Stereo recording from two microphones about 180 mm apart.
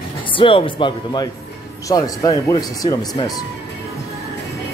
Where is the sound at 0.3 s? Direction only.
30° left (ahead or behind).